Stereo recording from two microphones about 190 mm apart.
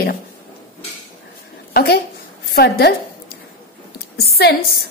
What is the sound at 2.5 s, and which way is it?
Speech, 55° left (ahead or behind).